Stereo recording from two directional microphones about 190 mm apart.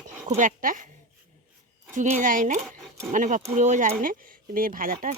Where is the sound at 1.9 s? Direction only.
40° right (ahead or behind).